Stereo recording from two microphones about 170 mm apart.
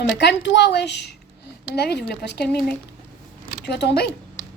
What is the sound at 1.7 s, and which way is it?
Speech, 70° left (ahead or behind).